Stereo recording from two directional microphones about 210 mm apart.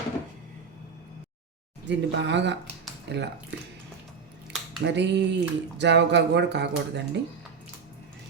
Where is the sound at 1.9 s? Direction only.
55° right (ahead or behind).